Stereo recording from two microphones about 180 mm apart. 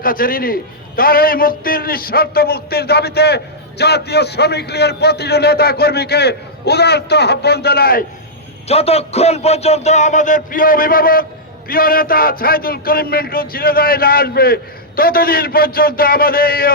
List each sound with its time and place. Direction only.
0.0 s a man's voice: 50° left (ahead or behind)
8.6 s a man's voice: 35° left (ahead or behind); by 16.7 s 55° left (ahead or behind)